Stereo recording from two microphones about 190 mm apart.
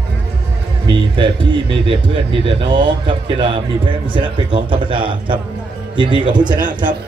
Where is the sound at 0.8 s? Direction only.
25° right (ahead or behind).